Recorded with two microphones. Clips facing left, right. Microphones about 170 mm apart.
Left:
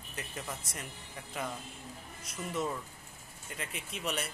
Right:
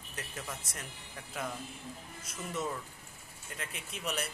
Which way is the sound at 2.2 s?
Centre (ahead or behind).